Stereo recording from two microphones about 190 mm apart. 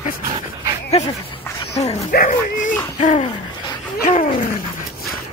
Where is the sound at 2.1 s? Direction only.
45° left (ahead or behind).